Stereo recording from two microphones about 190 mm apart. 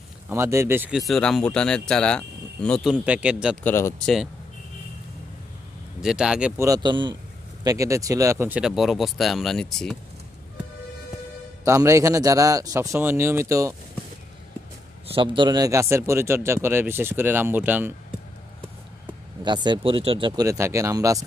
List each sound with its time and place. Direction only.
0.3 s speech: 15° right (ahead or behind)
3.6 s speech: 10° left (ahead or behind)
5.9 s speech: 5° right (ahead or behind)
6.6 s speech: 20° right (ahead or behind); by 9.9 s centre (ahead or behind)
11.6 s a man's voice: 15° right (ahead or behind)
15.1 s a man's voice: 25° right (ahead or behind); by 17.9 s 10° right (ahead or behind)
19.4 s speech: 25° right (ahead or behind)